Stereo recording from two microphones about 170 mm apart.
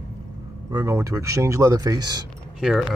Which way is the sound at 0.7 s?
20° right (ahead or behind).